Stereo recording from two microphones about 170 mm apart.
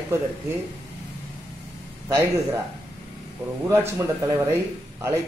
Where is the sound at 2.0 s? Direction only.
15° right (ahead or behind).